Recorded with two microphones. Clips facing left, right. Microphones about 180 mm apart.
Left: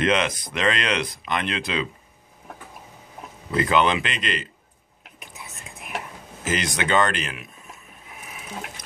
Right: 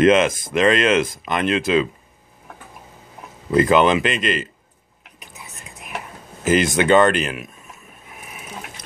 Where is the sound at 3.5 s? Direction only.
45° right (ahead or behind).